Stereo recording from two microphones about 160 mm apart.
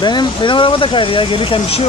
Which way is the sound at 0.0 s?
25° left (ahead or behind).